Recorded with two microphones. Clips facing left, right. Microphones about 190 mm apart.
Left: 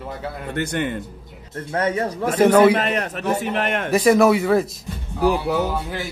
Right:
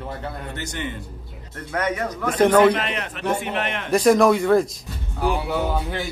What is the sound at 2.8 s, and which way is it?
A man's voice, 45° left (ahead or behind).